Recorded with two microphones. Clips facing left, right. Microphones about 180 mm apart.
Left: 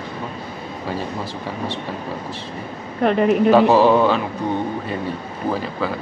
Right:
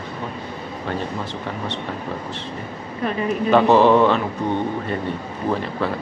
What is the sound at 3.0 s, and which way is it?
Speech, 65° left (ahead or behind).